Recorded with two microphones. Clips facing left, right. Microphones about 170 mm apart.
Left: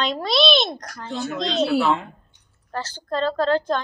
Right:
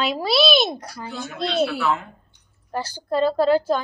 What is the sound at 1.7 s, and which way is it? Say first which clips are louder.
Speech: left 4 dB; 30° left (ahead or behind).